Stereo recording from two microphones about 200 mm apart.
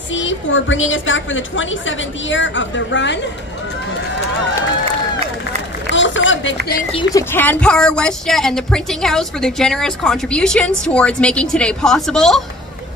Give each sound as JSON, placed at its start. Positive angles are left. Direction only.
{"t": 0.1, "sound": "a woman's voice", "side_deg": 70}
{"t": 5.9, "sound": "run", "side_deg": 65}
{"t": 7.2, "sound": "speech", "side_deg": 10}